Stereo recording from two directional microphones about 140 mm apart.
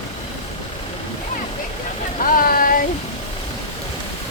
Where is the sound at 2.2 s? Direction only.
90° left.